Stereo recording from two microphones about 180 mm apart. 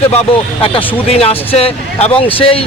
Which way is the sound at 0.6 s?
30° left (ahead or behind).